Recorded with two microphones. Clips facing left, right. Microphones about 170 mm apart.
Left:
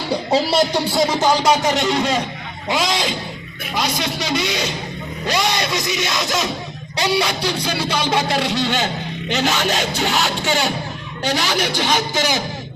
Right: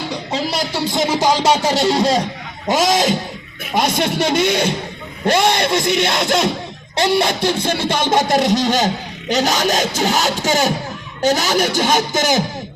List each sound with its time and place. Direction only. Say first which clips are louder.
0.3 s speech: left 6 dB; 30° left (ahead or behind)
0.9 s music: right 1 dB; 10° right (ahead or behind)
1.4 s music: right 1 dB; 30° right (ahead or behind)
2.6 s speech: right 5 dB; 45° right (ahead or behind)
9.3 s music: right 3 dB; 40° right (ahead or behind)
11.2 s speech: right 5 dB; 45° right (ahead or behind)